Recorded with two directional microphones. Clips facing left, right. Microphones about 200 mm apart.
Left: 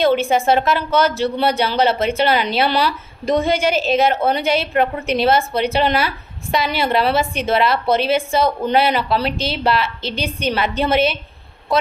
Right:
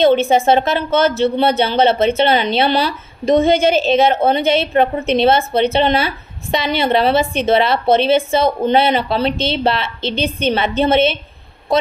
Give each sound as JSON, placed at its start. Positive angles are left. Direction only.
{"t": 0.0, "sound": "a woman's voice", "side_deg": -25}